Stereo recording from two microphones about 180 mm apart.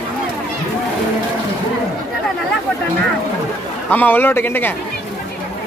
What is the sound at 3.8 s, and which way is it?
Speech, 10° left (ahead or behind).